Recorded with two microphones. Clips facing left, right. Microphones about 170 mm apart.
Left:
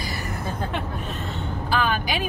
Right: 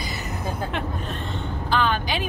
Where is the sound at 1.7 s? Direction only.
10° left (ahead or behind).